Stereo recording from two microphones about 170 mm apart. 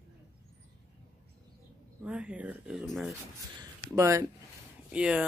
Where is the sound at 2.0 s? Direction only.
5° right (ahead or behind).